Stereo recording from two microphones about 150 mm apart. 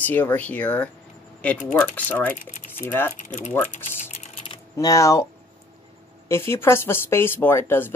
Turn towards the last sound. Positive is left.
turn(degrees=15)  # may be behind; listen again after turning